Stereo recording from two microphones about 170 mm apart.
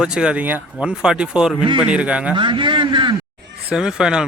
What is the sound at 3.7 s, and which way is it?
Speech, 5° right (ahead or behind).